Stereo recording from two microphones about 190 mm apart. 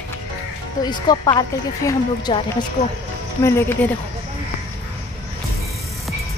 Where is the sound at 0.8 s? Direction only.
20° left (ahead or behind).